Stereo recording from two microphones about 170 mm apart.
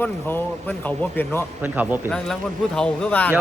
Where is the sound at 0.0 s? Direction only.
10° left (ahead or behind).